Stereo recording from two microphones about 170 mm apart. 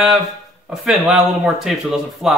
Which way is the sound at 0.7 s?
Centre (ahead or behind).